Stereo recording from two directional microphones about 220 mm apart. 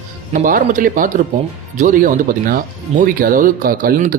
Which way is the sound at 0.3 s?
35° right (ahead or behind).